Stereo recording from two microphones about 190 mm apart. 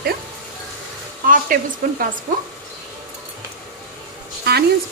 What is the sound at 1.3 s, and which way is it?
Speech, 45° right (ahead or behind).